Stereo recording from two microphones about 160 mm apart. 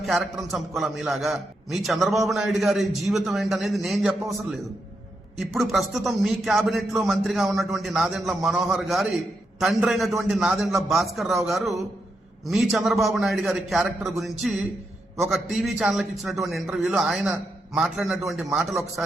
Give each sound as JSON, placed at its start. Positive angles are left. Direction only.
{"t": 0.0, "sound": "a man's voice", "side_deg": 0}